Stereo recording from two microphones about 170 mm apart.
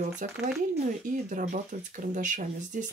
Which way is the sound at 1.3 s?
50° right (ahead or behind).